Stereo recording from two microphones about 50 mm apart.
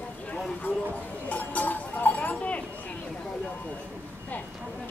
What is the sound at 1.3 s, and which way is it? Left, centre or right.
Cowbell, left.